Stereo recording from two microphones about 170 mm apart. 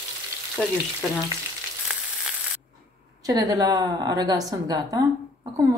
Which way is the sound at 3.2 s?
20° right (ahead or behind).